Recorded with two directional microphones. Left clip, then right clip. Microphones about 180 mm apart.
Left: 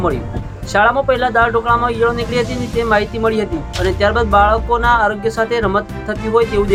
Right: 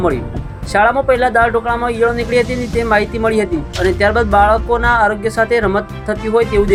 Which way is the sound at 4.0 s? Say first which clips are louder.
Even; 15° right (ahead or behind).